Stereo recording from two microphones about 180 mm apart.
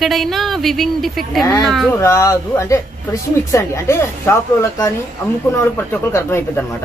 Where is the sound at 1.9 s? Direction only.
15° left (ahead or behind).